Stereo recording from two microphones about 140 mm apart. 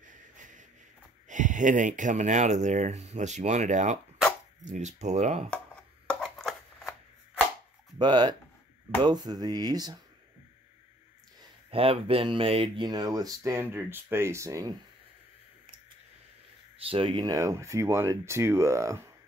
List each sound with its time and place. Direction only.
0.0 s a sound: 65° right (ahead or behind)
1.3 s speech: 65° right (ahead or behind)
6.0 s chopping: 5° left (ahead or behind)
8.0 s speech: 35° right (ahead or behind)
11.7 s speech: 40° right (ahead or behind); by 14.8 s 25° right (ahead or behind)
16.7 s speech: 40° right (ahead or behind); by 19.0 s 20° right (ahead or behind)